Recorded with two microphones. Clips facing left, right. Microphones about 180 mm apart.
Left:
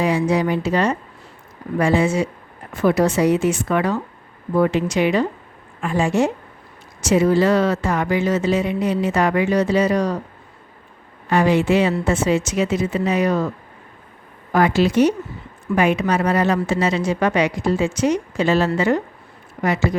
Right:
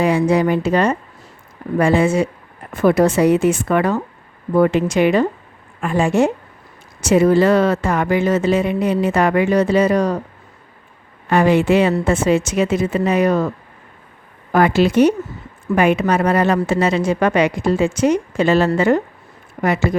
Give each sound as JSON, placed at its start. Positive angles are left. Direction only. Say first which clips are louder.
{"t": 0.0, "sound": "speech", "louder": "right 3 dB", "side_deg": -55}
{"t": 11.3, "sound": "speech", "louder": "right 3 dB", "side_deg": -55}
{"t": 14.5, "sound": "speech", "louder": "right 2 dB", "side_deg": -55}